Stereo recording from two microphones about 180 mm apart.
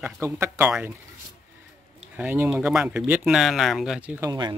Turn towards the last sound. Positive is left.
turn(degrees=-20)  # may be behind; listen again after turning